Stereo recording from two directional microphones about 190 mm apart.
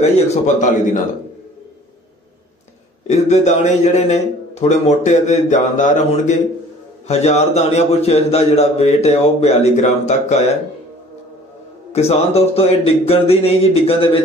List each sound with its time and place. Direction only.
0.0 s a man's voice: 35° left (ahead or behind)
3.1 s a man's voice: 35° left (ahead or behind)
11.9 s a man's voice: 35° left (ahead or behind)